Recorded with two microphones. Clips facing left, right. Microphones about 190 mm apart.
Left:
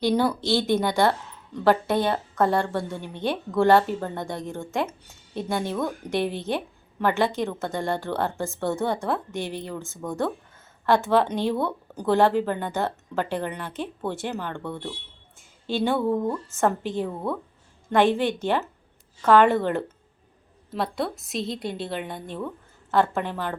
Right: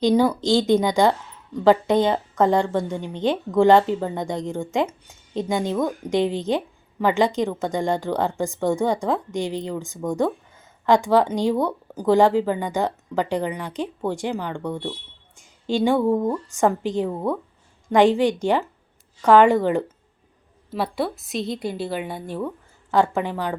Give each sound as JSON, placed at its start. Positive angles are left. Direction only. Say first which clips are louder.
{"t": 0.0, "sound": "a woman's voice", "louder": "right 4 dB", "side_deg": -10}
{"t": 20.7, "sound": "a woman's voice", "louder": "right 3 dB", "side_deg": -5}